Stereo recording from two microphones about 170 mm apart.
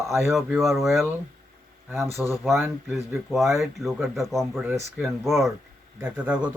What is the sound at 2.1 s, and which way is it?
Speech, 15° right (ahead or behind).